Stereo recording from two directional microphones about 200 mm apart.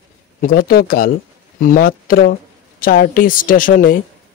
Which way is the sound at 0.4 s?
45° left (ahead or behind).